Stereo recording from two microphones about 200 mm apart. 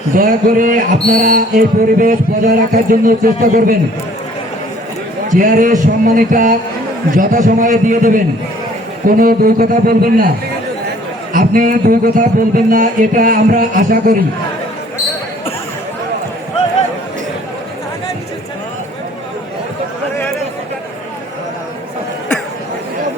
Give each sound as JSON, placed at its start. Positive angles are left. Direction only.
{"t": 0.1, "sound": "speech", "side_deg": -45}
{"t": 5.3, "sound": "a man's voice", "side_deg": -45}
{"t": 11.3, "sound": "speech", "side_deg": -45}